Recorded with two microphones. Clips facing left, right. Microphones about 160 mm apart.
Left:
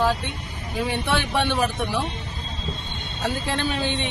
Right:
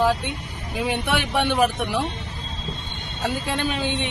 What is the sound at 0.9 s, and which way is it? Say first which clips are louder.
Speech: right 1 dB; 15° right (ahead or behind).